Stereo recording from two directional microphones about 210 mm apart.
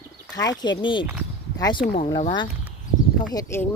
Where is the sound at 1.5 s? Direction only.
20° left (ahead or behind).